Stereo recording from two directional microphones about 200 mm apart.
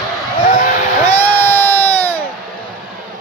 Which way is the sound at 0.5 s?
40° left (ahead or behind).